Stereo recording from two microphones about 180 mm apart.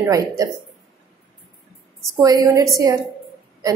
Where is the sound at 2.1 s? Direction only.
20° right (ahead or behind).